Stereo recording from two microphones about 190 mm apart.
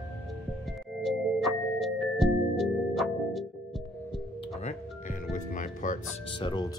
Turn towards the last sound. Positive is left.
turn(degrees=25)  # may be behind; listen again after turning